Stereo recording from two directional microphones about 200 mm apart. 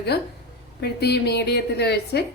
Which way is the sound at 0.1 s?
55° left (ahead or behind).